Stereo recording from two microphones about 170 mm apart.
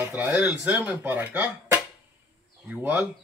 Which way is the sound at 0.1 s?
10° right (ahead or behind).